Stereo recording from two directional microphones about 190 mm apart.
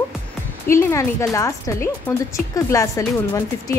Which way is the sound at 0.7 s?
15° left (ahead or behind).